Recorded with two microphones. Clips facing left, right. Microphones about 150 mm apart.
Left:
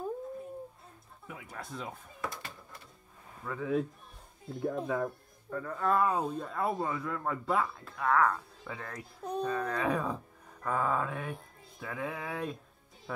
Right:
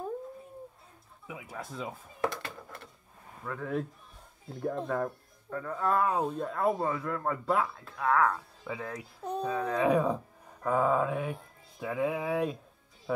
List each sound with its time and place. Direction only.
1.2 s speech: 5° right (ahead or behind)
2.2 s a sound: 65° right (ahead or behind)
3.4 s speech: centre (ahead or behind)